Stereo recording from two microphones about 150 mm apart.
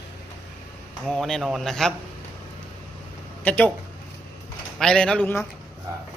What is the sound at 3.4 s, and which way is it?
Speech, 10° left (ahead or behind).